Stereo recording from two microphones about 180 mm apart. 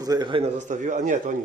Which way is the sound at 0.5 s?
45° right (ahead or behind).